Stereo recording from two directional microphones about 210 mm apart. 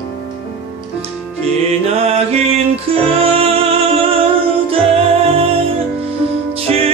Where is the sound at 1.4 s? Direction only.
30° right (ahead or behind).